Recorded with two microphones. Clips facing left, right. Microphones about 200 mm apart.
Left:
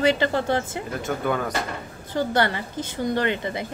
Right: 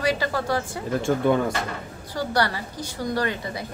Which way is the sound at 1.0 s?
25° right (ahead or behind).